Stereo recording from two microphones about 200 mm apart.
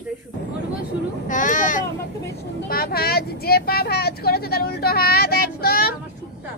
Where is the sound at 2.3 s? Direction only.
50° left (ahead or behind).